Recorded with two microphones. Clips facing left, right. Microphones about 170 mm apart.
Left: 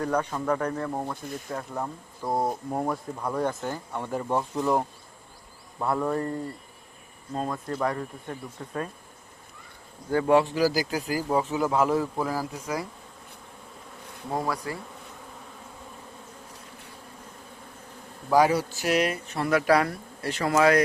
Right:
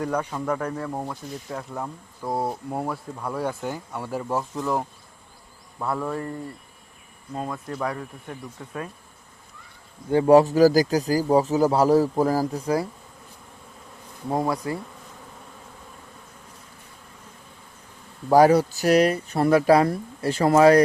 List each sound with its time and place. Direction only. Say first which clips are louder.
0.0 s speech: even; 10° right (ahead or behind)
7.4 s speech: left 1 dB; centre (ahead or behind)
10.1 s speech: right 6 dB; 30° right (ahead or behind)
14.3 s speech: right 5 dB; 20° right (ahead or behind)
18.3 s speech: right 5 dB; 40° right (ahead or behind)